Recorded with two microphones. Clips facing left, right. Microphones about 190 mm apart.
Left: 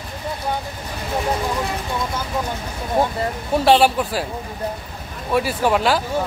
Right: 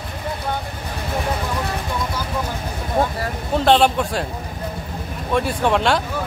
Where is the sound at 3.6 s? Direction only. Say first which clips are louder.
Even; 5° left (ahead or behind).